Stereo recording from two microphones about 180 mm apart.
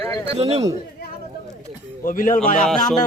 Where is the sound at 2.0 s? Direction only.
50° left (ahead or behind).